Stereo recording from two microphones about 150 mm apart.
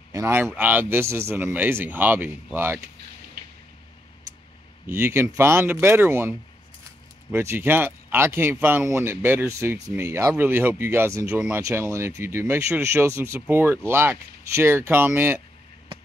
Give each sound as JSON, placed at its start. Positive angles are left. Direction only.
{"t": 0.1, "sound": "speech", "side_deg": -15}
{"t": 4.8, "sound": "speech", "side_deg": -15}